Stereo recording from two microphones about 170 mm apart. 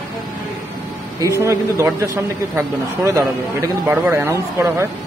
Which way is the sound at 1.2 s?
15° right (ahead or behind).